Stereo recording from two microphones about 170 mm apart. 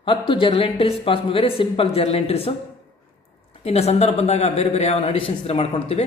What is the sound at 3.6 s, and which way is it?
A man's voice, 40° left (ahead or behind).